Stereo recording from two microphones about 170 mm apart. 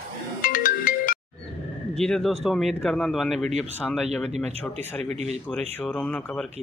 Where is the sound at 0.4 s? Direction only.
55° left (ahead or behind).